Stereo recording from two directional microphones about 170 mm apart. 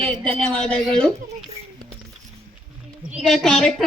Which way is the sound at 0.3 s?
5° left (ahead or behind).